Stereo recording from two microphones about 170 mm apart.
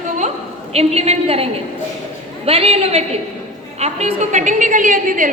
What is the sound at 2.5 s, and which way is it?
A woman's voice, 35° right (ahead or behind).